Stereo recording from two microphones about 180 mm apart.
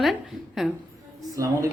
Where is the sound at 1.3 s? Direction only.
15° right (ahead or behind).